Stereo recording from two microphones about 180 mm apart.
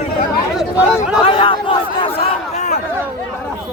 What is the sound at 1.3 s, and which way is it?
Chatter, 30° left (ahead or behind).